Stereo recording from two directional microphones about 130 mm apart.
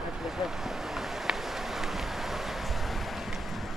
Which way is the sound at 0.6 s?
Centre (ahead or behind).